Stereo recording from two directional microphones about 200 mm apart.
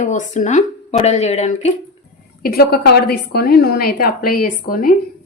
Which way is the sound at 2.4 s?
50° left (ahead or behind).